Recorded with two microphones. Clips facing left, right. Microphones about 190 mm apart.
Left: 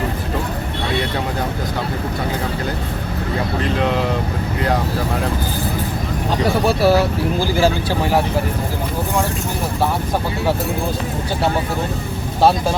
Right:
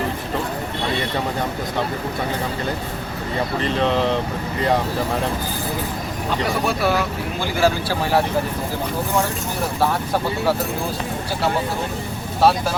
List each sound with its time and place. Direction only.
3.6 s speech: 5° left (ahead or behind)
6.7 s speech: 35° left (ahead or behind)